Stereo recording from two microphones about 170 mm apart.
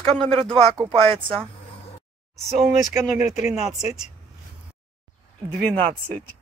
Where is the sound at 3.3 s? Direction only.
5° right (ahead or behind).